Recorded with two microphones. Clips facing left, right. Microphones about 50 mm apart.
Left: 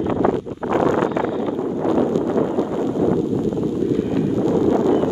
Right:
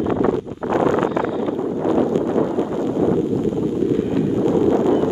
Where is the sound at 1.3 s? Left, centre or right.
Centre.